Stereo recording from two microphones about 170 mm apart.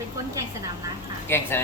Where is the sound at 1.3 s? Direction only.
15° left (ahead or behind).